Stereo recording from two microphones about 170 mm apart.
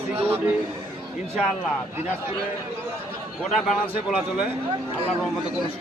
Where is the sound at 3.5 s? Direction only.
Centre (ahead or behind).